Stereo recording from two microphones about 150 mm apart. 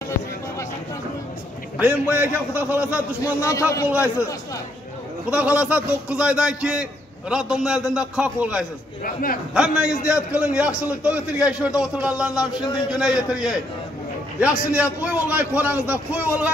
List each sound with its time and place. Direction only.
1.8 s a man's voice: 10° right (ahead or behind)
3.2 s a man's voice: 20° left (ahead or behind)
5.3 s a man's voice: 10° right (ahead or behind)
9.0 s a man's voice: 70° left (ahead or behind)
9.5 s a man's voice: 5° right (ahead or behind)
12.4 s a man's voice: 25° left (ahead or behind)
12.9 s a man's voice: 5° right (ahead or behind)